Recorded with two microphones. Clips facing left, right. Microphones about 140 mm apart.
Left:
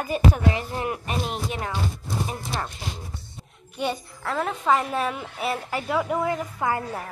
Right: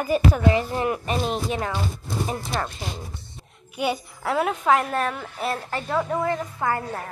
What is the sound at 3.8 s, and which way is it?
A woman's voice, 10° right (ahead or behind).